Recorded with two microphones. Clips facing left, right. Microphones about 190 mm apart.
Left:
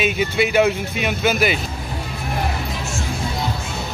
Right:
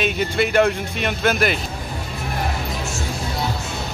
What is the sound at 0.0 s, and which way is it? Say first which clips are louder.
Speech: left 1 dB; 5° left (ahead or behind).